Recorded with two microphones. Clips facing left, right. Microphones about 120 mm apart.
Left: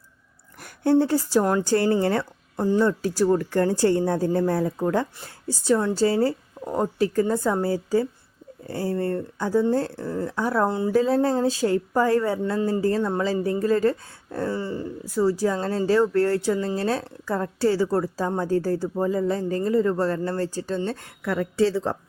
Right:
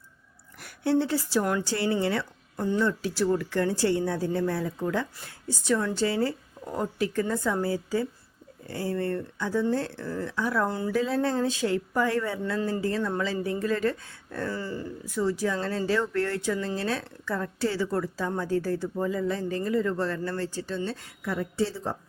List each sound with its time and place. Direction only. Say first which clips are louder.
0.6 s a woman's voice: left 5 dB; 45° left (ahead or behind)
1.6 s a woman's voice: left 6 dB; 45° left (ahead or behind)
10.7 s speech: left 6 dB; 25° left (ahead or behind); by 21.2 s 55° left (ahead or behind)
21.2 s a woman's voice: left 6 dB; 90° left